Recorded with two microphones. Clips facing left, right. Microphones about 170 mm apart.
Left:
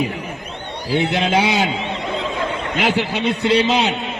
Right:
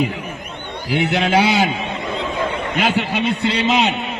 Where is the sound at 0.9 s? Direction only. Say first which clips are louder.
Even; 25° left (ahead or behind).